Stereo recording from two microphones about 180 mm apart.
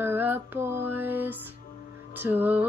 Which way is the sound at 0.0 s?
10° right (ahead or behind).